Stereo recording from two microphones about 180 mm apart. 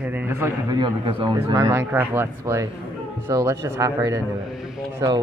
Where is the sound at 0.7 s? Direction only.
25° right (ahead or behind).